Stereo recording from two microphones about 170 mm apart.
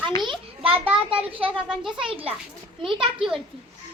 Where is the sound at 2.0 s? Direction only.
35° right (ahead or behind).